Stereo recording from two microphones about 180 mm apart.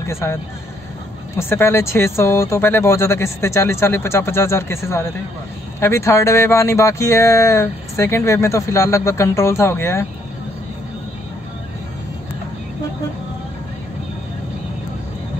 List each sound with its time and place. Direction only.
0.0 s speech: 15° left (ahead or behind)